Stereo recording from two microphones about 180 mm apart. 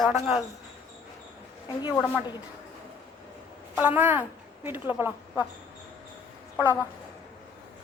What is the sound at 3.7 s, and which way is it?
A woman's voice, 10° right (ahead or behind).